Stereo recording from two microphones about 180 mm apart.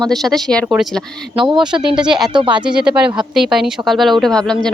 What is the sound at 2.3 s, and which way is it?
Speech, 25° right (ahead or behind).